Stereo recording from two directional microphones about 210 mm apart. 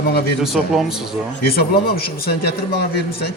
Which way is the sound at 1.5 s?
45° left (ahead or behind).